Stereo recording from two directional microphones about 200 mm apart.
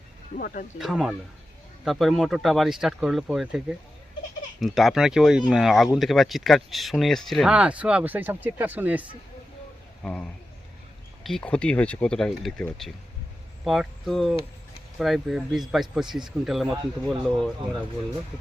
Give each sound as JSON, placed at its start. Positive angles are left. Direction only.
{"t": 0.3, "sound": "speech", "side_deg": 45}
{"t": 0.8, "sound": "speech", "side_deg": 0}
{"t": 10.0, "sound": "a man's voice", "side_deg": 5}